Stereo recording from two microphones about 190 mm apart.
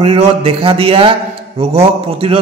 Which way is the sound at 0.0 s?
30° right (ahead or behind).